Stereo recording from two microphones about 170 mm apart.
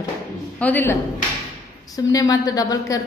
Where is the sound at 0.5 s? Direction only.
10° left (ahead or behind).